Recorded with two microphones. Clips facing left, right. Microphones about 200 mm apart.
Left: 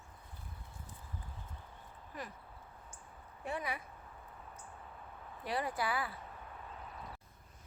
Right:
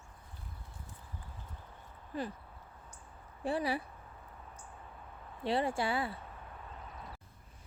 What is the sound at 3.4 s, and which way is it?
Speech, 30° right (ahead or behind).